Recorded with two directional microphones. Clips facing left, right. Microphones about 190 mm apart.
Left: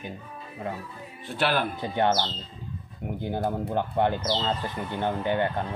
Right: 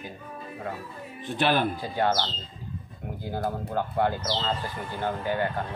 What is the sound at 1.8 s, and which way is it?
Speech, 20° left (ahead or behind).